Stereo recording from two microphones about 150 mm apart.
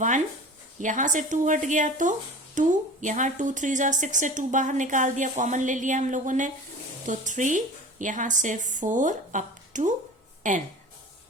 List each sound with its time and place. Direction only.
0.8 s speech: 55° right (ahead or behind)